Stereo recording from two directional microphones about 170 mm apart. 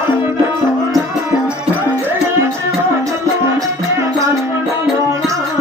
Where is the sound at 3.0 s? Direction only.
20° right (ahead or behind).